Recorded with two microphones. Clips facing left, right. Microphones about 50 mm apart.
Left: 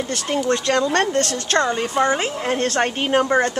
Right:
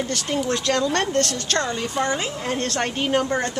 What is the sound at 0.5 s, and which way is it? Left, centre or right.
Speech, centre.